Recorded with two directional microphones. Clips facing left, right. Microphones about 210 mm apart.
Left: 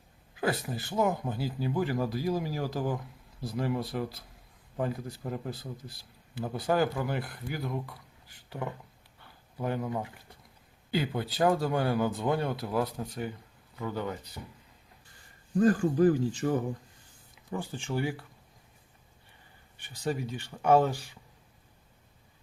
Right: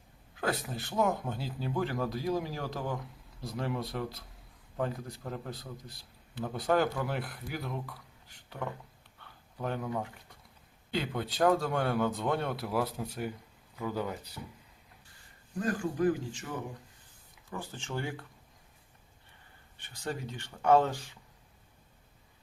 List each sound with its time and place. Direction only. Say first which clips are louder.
0.3 s a man's voice: left 3 dB; 5° left (ahead or behind)
9.6 s a man's voice: left 2 dB; 5° left (ahead or behind)
15.6 s speech: left 6 dB; 35° left (ahead or behind)
17.5 s speech: left 5 dB; 15° left (ahead or behind)
19.8 s speech: left 5 dB; 10° left (ahead or behind)